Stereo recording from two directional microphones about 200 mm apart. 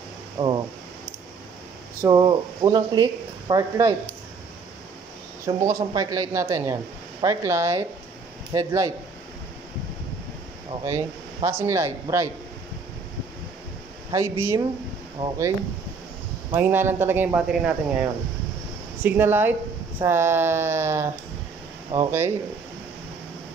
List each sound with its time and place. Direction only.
0.4 s speech: 20° right (ahead or behind)
2.0 s speech: 20° right (ahead or behind)
5.6 s speech: 15° right (ahead or behind)
10.9 s speech: 15° right (ahead or behind)
14.1 s speech: 15° right (ahead or behind)
16.5 s speech: 10° right (ahead or behind)
19.0 s speech: 10° right (ahead or behind)